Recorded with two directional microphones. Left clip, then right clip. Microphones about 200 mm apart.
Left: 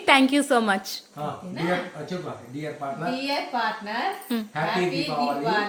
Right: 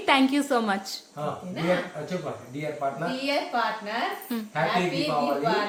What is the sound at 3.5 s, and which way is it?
Speech, 15° right (ahead or behind).